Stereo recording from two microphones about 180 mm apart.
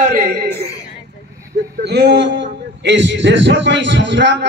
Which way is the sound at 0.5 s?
15° left (ahead or behind).